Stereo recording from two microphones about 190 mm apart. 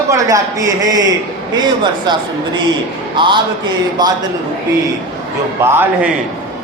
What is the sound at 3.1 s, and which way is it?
Speech, 25° right (ahead or behind).